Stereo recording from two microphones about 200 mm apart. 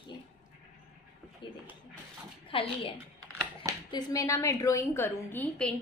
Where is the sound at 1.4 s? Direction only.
25° left (ahead or behind).